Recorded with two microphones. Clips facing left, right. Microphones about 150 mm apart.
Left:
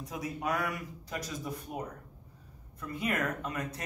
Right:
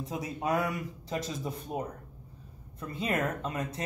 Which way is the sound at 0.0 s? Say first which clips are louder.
Right 2 dB; 25° right (ahead or behind).